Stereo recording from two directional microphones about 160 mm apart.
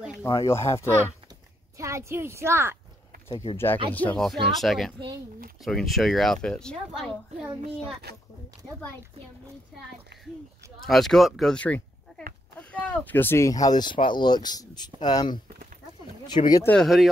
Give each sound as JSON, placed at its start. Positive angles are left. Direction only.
{"t": 0.4, "sound": "speech", "side_deg": 15}
{"t": 1.8, "sound": "a woman's voice", "side_deg": -20}
{"t": 3.5, "sound": "speech", "side_deg": 15}
{"t": 10.8, "sound": "speech", "side_deg": 0}
{"t": 16.6, "sound": "speech", "side_deg": 5}